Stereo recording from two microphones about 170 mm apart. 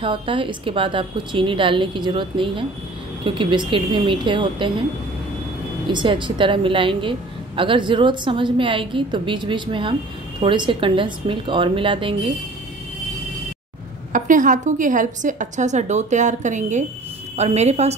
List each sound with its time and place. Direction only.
0.0 s a woman's voice: 30° right (ahead or behind)
5.9 s a woman's voice: 30° right (ahead or behind)
14.1 s a woman's voice: 50° right (ahead or behind)